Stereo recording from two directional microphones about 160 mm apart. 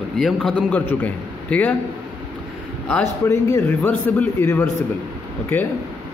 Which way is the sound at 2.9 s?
15° left (ahead or behind).